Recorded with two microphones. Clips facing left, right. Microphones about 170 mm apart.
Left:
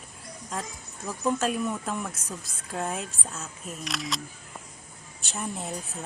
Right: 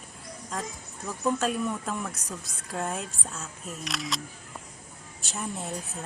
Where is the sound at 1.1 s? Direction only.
5° left (ahead or behind).